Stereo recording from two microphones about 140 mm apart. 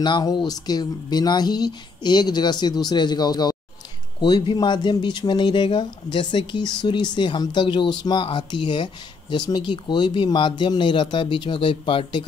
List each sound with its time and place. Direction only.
0.0 s speech: 30° left (ahead or behind)